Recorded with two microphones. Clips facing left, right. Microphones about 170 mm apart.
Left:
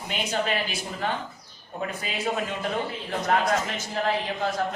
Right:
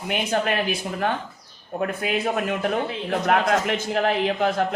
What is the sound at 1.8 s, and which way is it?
A man's voice, 60° right (ahead or behind).